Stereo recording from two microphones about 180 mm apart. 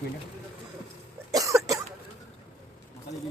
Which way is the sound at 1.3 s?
20° right (ahead or behind).